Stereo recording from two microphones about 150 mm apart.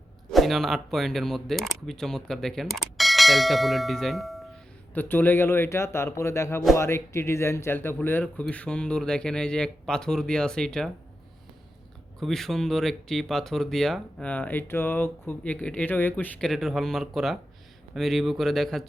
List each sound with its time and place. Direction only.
0.3 s speech: centre (ahead or behind)
4.9 s speech: 15° left (ahead or behind)
12.2 s speech: centre (ahead or behind)